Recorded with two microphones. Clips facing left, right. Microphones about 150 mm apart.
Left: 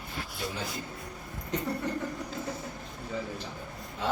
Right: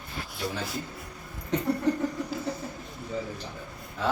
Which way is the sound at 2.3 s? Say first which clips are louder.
Right 4 dB; 5° right (ahead or behind).